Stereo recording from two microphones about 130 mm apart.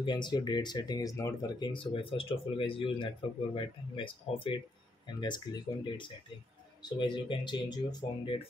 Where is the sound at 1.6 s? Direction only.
40° left (ahead or behind).